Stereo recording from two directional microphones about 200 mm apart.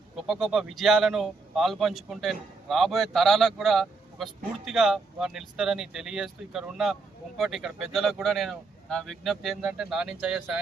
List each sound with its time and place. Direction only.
0.2 s speech: centre (ahead or behind)